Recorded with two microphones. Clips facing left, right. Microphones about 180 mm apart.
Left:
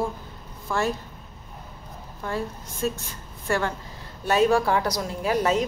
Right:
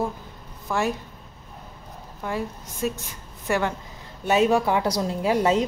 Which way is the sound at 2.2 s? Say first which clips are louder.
Right 1 dB; 15° right (ahead or behind).